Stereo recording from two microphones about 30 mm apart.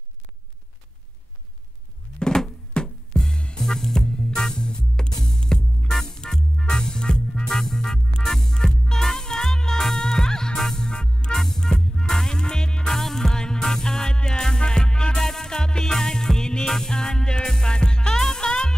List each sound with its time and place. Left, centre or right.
2.1 s a sound: left
2.7 s music: left
10.9 s music: left
11.3 s music: centre
11.7 s music: left
12.8 s music: centre